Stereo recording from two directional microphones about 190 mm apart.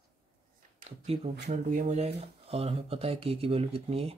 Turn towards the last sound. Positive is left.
turn(degrees=-30)  # may be behind; listen again after turning